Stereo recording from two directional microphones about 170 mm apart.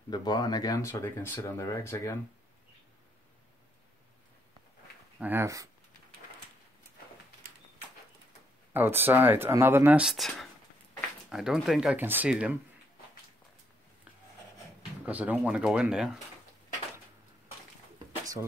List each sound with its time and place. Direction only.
0.1 s speech: 25° left (ahead or behind)
5.2 s speech: 15° right (ahead or behind)
8.7 s speech: 10° right (ahead or behind)
15.0 s speech: 10° right (ahead or behind)
17.9 s a sound: 20° right (ahead or behind)